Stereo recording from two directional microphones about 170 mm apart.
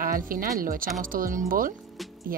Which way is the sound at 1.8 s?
Centre (ahead or behind).